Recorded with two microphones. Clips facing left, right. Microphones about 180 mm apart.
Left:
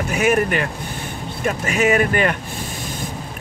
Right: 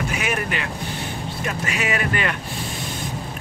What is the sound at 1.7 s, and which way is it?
Speech, 45° left (ahead or behind).